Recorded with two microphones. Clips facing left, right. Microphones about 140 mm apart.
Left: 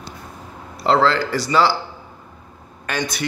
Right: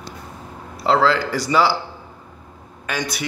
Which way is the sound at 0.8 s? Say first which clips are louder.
Even; 5° right (ahead or behind).